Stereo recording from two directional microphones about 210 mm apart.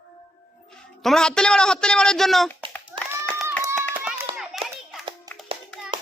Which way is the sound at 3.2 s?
5° left (ahead or behind).